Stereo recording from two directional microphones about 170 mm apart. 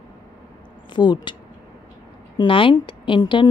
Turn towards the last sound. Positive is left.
turn(degrees=30)  # may be behind; listen again after turning